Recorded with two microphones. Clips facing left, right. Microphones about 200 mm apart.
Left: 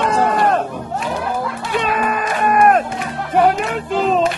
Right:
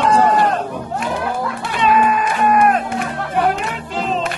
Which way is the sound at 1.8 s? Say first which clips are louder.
Right 5 dB; 50° left (ahead or behind).